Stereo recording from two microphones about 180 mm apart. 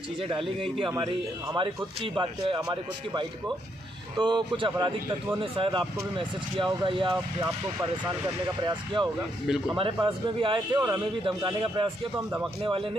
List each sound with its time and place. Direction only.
0.2 s a man's voice: 30° right (ahead or behind)
8.6 s a man's voice: 25° right (ahead or behind)